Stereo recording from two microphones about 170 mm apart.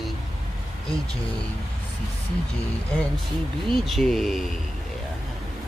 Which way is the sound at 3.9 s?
Centre (ahead or behind).